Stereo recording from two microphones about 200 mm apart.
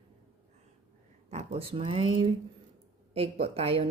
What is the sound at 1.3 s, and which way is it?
Speech, 35° right (ahead or behind).